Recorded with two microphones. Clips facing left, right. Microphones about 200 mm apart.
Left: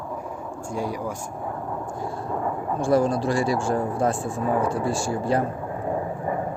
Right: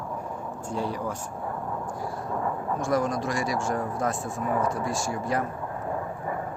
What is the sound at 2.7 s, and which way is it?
Speech, 30° left (ahead or behind).